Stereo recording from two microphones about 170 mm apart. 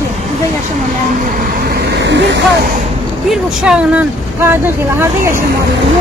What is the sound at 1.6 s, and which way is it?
Vehicle, 65° right (ahead or behind).